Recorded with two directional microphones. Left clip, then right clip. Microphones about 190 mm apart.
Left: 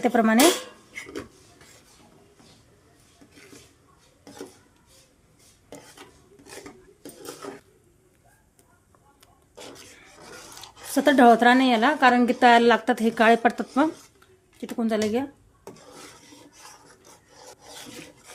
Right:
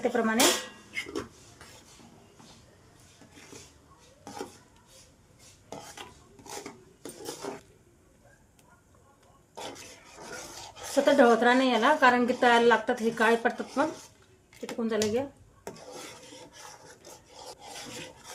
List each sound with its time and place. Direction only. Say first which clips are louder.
0.0 s a woman's voice: left 6 dB; 65° left (ahead or behind)
10.9 s a woman's voice: left 4 dB; 60° left (ahead or behind)